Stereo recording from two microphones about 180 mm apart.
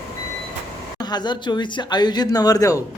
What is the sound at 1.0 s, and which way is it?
Speech, 25° left (ahead or behind).